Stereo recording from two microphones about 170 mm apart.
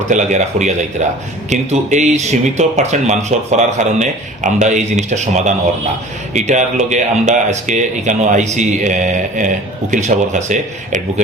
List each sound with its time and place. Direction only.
0.1 s speech: 45° right (ahead or behind)